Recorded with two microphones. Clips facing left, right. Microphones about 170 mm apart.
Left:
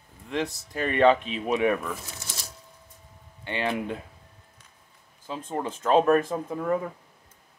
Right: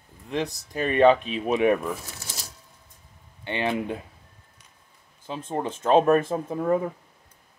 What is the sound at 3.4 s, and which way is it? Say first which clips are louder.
Speech: right 2 dB; 20° right (ahead or behind).